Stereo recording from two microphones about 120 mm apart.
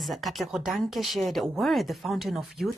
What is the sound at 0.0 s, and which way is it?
Speech, centre (ahead or behind).